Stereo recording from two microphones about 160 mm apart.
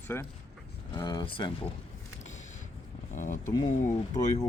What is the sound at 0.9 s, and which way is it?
Speech, 25° left (ahead or behind).